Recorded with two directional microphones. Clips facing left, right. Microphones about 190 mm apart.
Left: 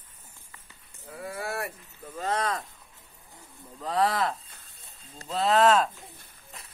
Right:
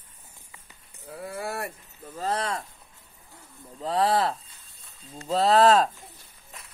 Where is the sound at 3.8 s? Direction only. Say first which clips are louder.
Right 2 dB; 30° right (ahead or behind).